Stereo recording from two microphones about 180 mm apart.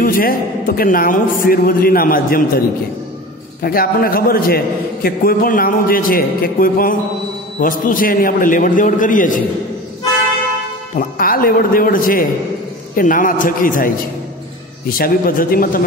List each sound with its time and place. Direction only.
0.0 s a man's voice: 50° left (ahead or behind)
3.6 s a man's voice: 55° left (ahead or behind)
11.0 s a man's voice: 55° left (ahead or behind)